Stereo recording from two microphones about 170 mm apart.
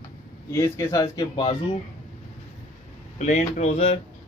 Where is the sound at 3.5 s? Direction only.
40° left (ahead or behind).